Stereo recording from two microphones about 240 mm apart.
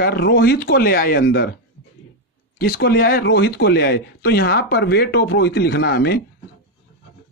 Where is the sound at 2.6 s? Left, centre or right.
Left.